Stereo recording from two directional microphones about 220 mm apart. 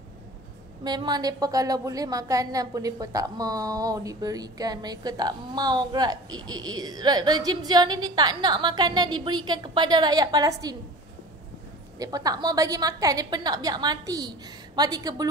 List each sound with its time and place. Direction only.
0.8 s a woman's voice: 20° right (ahead or behind)
12.0 s a woman's voice: 15° right (ahead or behind)